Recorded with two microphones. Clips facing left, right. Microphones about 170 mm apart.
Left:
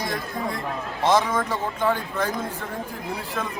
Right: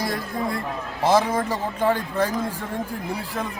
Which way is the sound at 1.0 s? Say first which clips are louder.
Right 1 dB; 35° right (ahead or behind).